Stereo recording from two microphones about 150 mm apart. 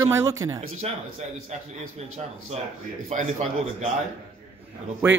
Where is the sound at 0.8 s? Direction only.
45° right (ahead or behind).